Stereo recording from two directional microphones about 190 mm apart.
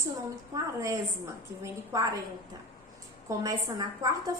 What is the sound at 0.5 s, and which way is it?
A woman's voice, 15° right (ahead or behind).